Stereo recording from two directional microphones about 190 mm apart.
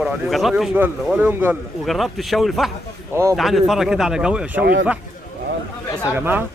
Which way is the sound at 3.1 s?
15° right (ahead or behind).